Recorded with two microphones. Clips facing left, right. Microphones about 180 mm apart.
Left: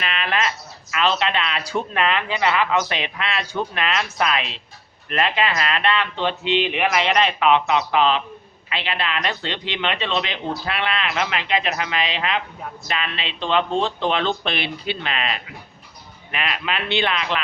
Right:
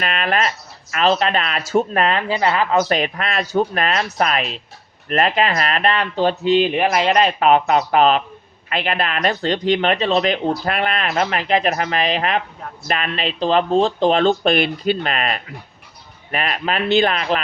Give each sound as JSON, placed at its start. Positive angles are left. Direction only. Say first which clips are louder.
{"t": 0.0, "sound": "speech", "louder": "right 4 dB", "side_deg": -45}